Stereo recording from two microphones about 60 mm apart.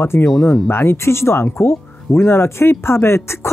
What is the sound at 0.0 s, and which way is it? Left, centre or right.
Speech, left.